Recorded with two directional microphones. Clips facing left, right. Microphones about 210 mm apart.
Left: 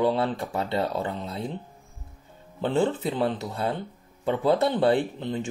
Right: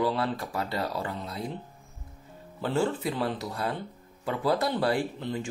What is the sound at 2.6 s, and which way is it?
Speech, 20° left (ahead or behind).